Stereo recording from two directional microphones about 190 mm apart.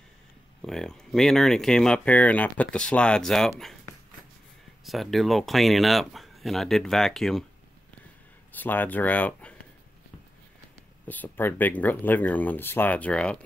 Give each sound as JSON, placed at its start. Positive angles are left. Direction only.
{"t": 0.6, "sound": "speech", "side_deg": 0}
{"t": 4.8, "sound": "speech", "side_deg": 0}
{"t": 8.5, "sound": "speech", "side_deg": 10}
{"t": 11.1, "sound": "speech", "side_deg": 10}